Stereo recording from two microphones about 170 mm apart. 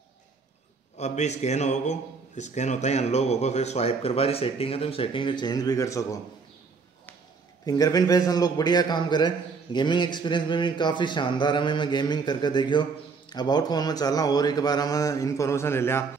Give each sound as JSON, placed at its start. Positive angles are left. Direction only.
{"t": 0.9, "sound": "a man's voice", "side_deg": 40}
{"t": 7.6, "sound": "a man's voice", "side_deg": 20}